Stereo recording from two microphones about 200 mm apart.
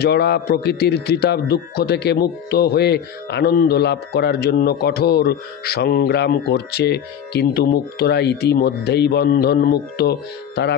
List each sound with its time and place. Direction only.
0.0 s a man's voice: 55° left (ahead or behind)